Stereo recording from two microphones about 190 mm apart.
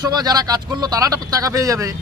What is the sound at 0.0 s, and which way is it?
Speech, 20° right (ahead or behind).